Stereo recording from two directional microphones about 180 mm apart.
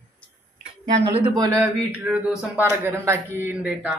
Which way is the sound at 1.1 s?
25° right (ahead or behind).